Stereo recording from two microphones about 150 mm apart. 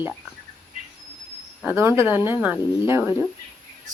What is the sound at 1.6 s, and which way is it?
Speech, 15° right (ahead or behind).